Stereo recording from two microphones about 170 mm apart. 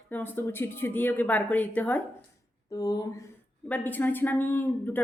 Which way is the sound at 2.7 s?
20° left (ahead or behind).